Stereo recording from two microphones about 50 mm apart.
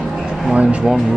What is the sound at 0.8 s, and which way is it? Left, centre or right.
Music, centre.